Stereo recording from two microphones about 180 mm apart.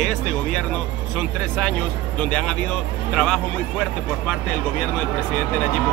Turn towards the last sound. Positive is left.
turn(degrees=5)  # may be behind; listen again after turning